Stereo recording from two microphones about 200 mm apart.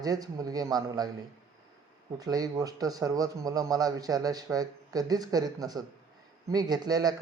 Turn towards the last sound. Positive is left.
turn(degrees=-20)  # may be behind; listen again after turning